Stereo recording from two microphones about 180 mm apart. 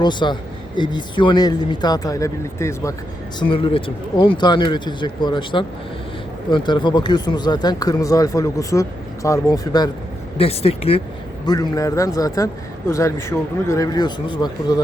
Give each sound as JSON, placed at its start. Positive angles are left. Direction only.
{"t": 0.0, "sound": "speech", "side_deg": 25}
{"t": 3.5, "sound": "speech", "side_deg": 30}
{"t": 10.3, "sound": "speech", "side_deg": 35}
{"t": 11.4, "sound": "speech", "side_deg": 20}